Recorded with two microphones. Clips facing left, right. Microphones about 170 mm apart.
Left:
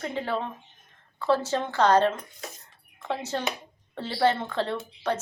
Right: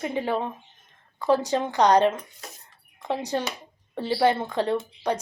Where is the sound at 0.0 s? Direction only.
15° right (ahead or behind).